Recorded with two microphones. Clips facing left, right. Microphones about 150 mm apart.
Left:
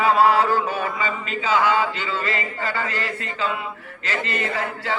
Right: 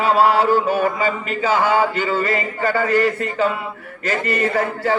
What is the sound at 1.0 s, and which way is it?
Speech, 40° right (ahead or behind).